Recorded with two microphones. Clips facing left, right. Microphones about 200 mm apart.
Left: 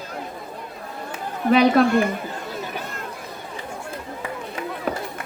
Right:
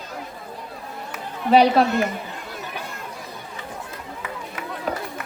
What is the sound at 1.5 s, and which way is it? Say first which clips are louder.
Speech: even; 55° left (ahead or behind).